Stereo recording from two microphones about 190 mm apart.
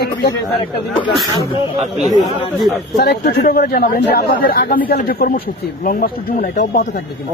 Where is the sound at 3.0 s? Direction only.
55° left (ahead or behind).